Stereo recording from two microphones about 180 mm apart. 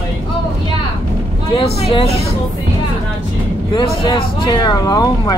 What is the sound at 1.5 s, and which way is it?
Vehicle, 35° left (ahead or behind).